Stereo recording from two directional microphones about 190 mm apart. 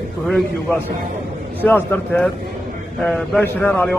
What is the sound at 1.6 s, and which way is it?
A man's voice, 10° left (ahead or behind).